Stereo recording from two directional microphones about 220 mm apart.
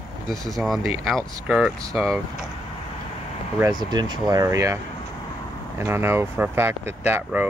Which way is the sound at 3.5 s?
15° right (ahead or behind).